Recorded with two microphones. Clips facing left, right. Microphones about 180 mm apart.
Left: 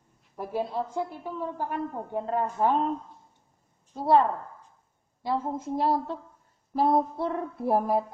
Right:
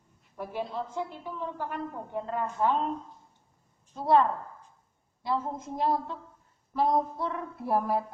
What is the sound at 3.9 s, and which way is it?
Speech, 35° left (ahead or behind).